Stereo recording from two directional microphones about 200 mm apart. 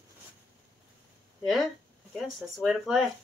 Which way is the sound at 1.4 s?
Centre (ahead or behind).